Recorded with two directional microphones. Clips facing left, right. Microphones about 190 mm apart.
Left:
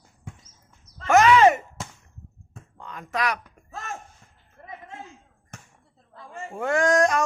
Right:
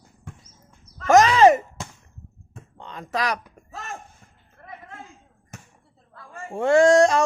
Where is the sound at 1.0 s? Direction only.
35° right (ahead or behind).